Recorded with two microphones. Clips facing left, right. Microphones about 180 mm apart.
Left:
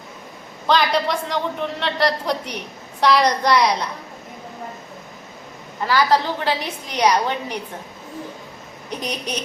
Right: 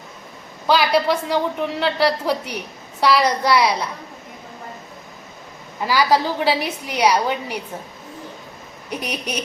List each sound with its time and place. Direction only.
0.7 s a woman's voice: 5° right (ahead or behind)
5.8 s a woman's voice: 10° right (ahead or behind)
8.9 s a woman's voice: 10° right (ahead or behind)